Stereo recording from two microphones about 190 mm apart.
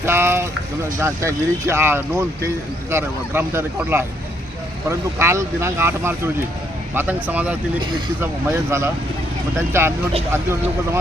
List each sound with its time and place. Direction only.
0.0 s clip-clop: 10° right (ahead or behind)
1.0 s speech: 15° right (ahead or behind)